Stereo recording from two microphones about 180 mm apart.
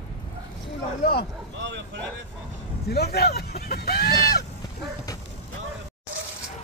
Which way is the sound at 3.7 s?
60° left (ahead or behind).